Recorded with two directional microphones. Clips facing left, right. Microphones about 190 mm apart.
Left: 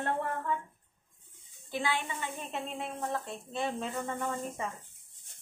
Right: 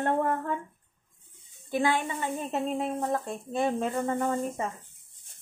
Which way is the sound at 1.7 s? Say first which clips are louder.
Right 7 dB; 50° right (ahead or behind).